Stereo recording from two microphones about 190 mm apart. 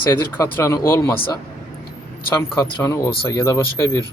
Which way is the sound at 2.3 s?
15° left (ahead or behind).